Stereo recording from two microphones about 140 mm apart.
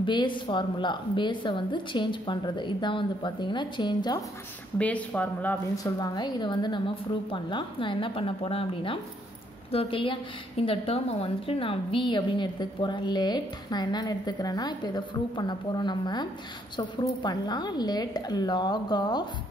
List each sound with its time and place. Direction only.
0.0 s a woman's voice: 35° left (ahead or behind)
4.7 s speech: 10° left (ahead or behind)
5.9 s a woman's voice: 30° left (ahead or behind)